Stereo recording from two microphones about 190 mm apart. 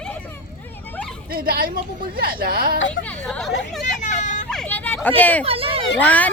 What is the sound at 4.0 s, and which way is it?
Vehicle, 40° left (ahead or behind).